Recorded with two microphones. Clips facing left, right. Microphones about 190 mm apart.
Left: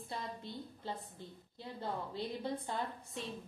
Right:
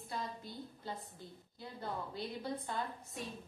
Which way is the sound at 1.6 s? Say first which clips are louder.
Left 2 dB; 25° left (ahead or behind).